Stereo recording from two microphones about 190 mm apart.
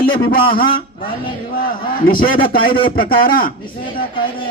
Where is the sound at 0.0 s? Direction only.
50° left (ahead or behind).